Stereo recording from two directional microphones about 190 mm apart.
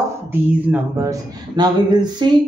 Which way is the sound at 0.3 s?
15° right (ahead or behind).